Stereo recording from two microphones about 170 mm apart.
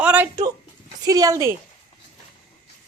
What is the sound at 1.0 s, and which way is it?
Speech, 20° right (ahead or behind).